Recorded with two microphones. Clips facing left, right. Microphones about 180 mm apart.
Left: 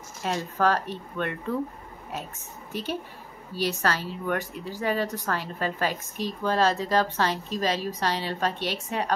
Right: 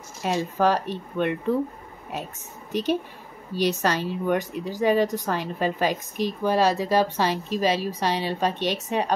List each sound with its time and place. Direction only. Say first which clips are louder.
0.2 s speech: right 3 dB; 15° right (ahead or behind)
2.7 s speech: right 7 dB; 15° right (ahead or behind)